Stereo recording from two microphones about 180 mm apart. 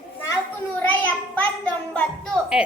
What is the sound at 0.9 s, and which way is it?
A child's voice, 10° left (ahead or behind).